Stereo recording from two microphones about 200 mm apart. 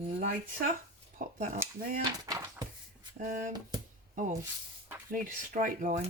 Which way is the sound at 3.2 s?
40° right (ahead or behind).